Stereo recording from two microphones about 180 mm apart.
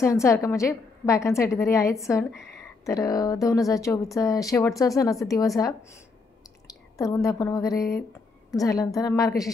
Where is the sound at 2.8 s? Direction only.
20° left (ahead or behind).